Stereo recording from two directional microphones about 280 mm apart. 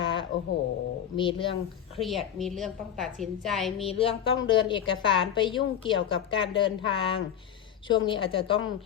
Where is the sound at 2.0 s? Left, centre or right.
Centre.